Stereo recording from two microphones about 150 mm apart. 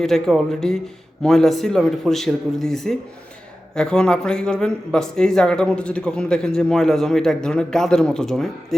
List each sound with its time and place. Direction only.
0.0 s speech: centre (ahead or behind)